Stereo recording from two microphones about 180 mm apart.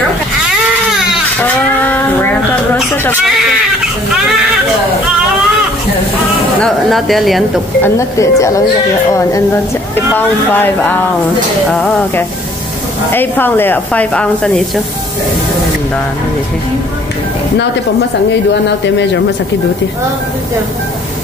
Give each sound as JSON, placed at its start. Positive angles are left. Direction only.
{"t": 1.4, "sound": "a sound", "side_deg": 10}
{"t": 6.6, "sound": "speech", "side_deg": 0}
{"t": 7.8, "sound": "speech", "side_deg": 15}
{"t": 10.1, "sound": "speech", "side_deg": 10}
{"t": 13.1, "sound": "speech", "side_deg": 10}
{"t": 18.5, "sound": "speech", "side_deg": 75}